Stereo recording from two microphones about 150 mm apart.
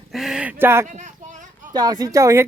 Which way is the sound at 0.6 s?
15° right (ahead or behind).